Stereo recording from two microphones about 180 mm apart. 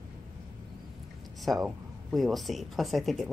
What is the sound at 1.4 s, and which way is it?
Speech, centre (ahead or behind).